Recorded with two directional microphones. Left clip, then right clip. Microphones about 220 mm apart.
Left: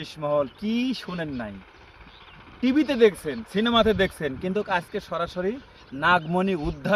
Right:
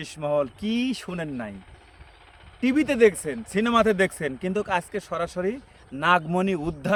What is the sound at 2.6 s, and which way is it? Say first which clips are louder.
Speech: even; 5° right (ahead or behind).